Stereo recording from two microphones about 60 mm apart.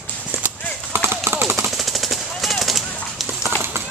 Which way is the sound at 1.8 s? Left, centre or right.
Centre.